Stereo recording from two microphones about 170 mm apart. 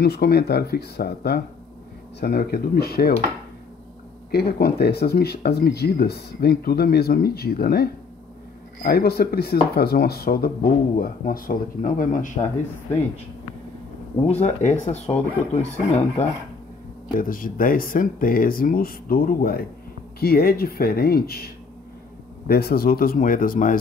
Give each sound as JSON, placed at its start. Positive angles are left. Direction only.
{"t": 0.0, "sound": "speech", "side_deg": 70}
{"t": 4.3, "sound": "speech", "side_deg": 65}
{"t": 14.2, "sound": "speech", "side_deg": 40}
{"t": 17.2, "sound": "speech", "side_deg": 55}
{"t": 22.5, "sound": "speech", "side_deg": 65}